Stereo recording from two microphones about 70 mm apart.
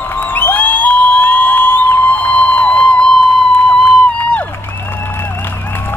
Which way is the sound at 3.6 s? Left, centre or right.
Centre.